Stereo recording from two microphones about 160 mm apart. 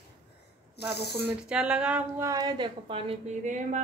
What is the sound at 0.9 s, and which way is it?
Speech, 90° left.